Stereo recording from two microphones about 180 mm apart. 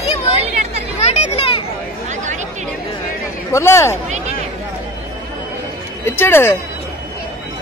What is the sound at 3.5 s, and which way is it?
Speech, 15° left (ahead or behind).